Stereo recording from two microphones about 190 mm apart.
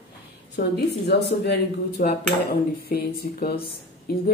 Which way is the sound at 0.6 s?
60° left (ahead or behind).